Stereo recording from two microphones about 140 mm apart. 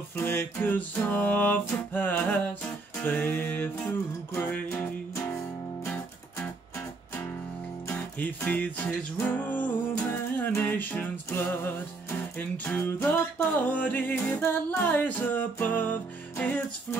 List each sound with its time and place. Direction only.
0.1 s music: 15° left (ahead or behind)
7.9 s music: 15° left (ahead or behind)